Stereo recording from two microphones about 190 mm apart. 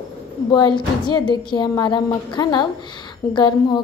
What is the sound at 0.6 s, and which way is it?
A woman's voice, 25° left (ahead or behind).